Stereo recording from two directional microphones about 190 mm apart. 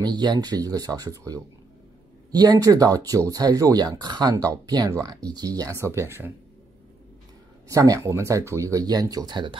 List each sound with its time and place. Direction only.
0.0 s speech: 25° right (ahead or behind)
7.6 s speech: 15° right (ahead or behind)